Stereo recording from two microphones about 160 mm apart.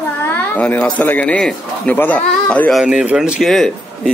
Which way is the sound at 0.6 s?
10° left (ahead or behind).